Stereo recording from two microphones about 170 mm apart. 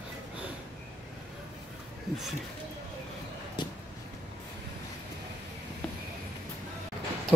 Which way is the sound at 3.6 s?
25° left (ahead or behind).